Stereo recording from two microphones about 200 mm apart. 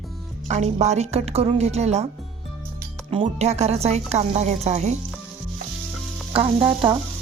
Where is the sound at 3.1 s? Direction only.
30° right (ahead or behind).